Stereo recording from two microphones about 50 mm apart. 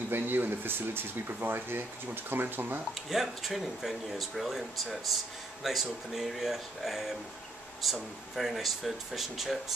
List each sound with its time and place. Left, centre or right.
0.1 s speech: right
2.9 s speech: centre